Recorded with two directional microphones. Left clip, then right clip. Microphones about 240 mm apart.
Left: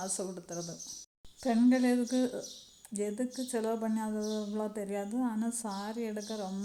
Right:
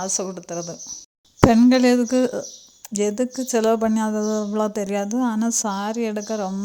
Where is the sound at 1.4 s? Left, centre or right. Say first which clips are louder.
Right 13 dB; right.